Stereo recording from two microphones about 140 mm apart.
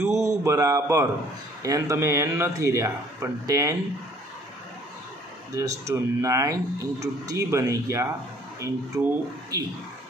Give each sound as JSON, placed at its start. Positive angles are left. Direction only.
{"t": 0.1, "sound": "speech", "side_deg": -20}
{"t": 5.6, "sound": "speech", "side_deg": -20}